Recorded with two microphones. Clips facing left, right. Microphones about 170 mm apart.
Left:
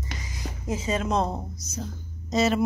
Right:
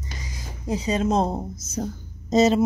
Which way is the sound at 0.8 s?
35° right (ahead or behind).